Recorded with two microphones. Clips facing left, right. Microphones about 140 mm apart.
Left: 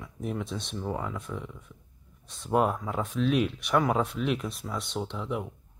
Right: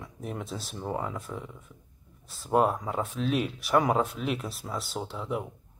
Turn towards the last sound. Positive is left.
turn(degrees=0)  # may be behind; listen again after turning